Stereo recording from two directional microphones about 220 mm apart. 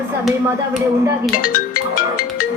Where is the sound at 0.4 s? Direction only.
10° right (ahead or behind).